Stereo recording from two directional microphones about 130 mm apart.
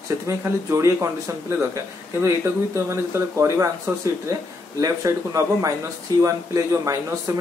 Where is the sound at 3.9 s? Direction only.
20° right (ahead or behind).